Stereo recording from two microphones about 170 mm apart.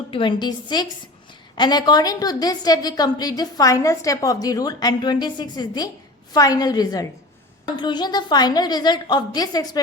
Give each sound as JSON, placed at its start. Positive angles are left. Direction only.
{"t": 0.1, "sound": "a woman's voice", "side_deg": 30}